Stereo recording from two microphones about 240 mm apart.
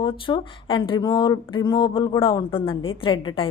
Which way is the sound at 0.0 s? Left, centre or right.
Centre.